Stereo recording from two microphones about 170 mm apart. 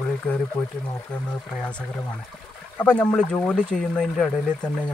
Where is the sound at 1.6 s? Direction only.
5° left (ahead or behind).